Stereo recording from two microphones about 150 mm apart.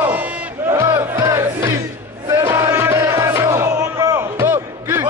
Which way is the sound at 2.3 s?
20° right (ahead or behind).